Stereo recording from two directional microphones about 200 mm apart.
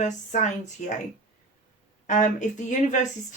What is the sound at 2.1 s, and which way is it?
Speech, 40° left (ahead or behind).